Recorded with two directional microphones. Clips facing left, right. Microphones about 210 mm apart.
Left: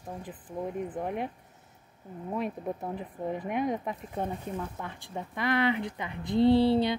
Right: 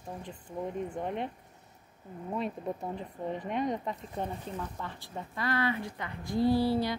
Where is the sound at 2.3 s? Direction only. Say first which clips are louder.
Left 1 dB; 5° left (ahead or behind).